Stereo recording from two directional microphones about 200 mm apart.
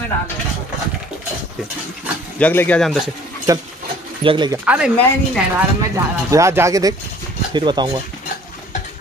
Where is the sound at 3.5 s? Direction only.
15° right (ahead or behind).